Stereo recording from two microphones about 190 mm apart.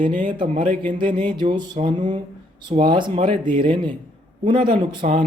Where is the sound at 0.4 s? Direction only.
35° right (ahead or behind).